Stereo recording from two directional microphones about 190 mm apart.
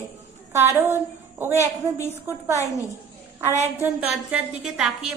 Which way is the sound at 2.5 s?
15° left (ahead or behind).